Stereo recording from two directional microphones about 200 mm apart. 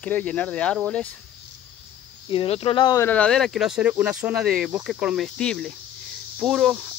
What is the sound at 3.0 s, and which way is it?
Cricket, 5° left (ahead or behind).